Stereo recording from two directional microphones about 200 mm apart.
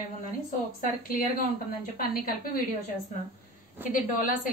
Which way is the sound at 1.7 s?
45° left (ahead or behind).